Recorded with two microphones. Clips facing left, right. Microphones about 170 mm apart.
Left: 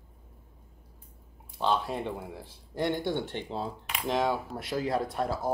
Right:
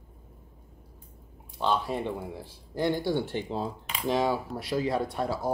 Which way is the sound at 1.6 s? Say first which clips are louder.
Right 1 dB; centre (ahead or behind).